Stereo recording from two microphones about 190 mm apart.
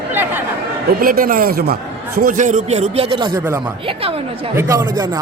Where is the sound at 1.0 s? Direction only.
50° right (ahead or behind).